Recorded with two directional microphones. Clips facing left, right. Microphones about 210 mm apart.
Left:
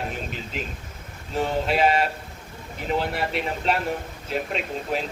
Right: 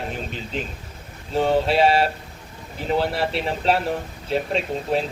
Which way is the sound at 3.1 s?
30° right (ahead or behind).